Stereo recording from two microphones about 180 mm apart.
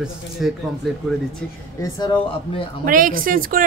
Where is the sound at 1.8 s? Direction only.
25° left (ahead or behind).